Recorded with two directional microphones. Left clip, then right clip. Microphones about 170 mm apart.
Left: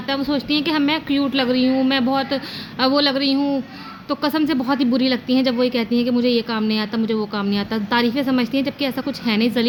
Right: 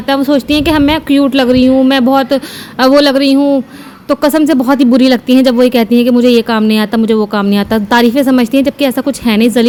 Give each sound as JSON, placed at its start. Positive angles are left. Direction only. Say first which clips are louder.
{"t": 0.1, "sound": "speech", "louder": "right 10 dB", "side_deg": -50}